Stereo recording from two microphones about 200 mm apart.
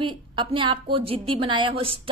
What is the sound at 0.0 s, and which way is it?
A woman's voice, 25° right (ahead or behind).